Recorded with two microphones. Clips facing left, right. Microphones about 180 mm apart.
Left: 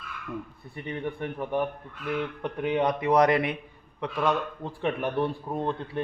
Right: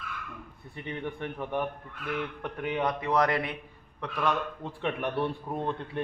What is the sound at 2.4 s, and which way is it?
Speech, 25° left (ahead or behind).